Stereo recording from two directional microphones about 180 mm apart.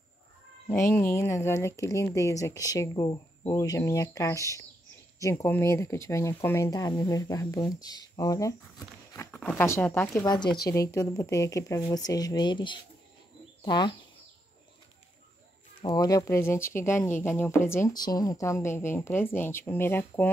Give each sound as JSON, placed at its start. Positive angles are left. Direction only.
{"t": 0.9, "sound": "speech", "side_deg": 15}
{"t": 9.4, "sound": "speech", "side_deg": 5}
{"t": 10.2, "sound": "speech", "side_deg": 25}
{"t": 15.8, "sound": "speech", "side_deg": 20}